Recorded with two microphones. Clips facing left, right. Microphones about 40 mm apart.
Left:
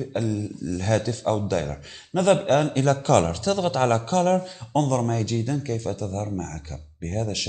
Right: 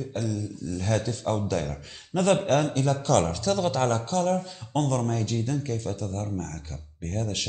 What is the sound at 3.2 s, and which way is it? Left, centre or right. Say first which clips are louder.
Speech: left 2 dB; left.